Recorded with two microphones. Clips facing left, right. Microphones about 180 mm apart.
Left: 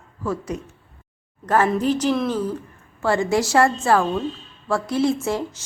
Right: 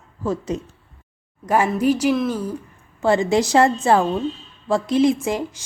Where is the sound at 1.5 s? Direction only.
10° right (ahead or behind).